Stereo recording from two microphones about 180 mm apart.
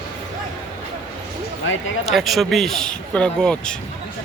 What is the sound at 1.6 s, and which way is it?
Speech, 90° left.